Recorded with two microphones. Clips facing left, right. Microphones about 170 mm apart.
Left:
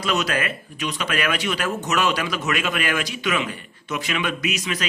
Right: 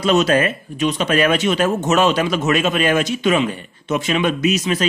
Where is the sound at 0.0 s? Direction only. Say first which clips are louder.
Right 8 dB; 25° right (ahead or behind).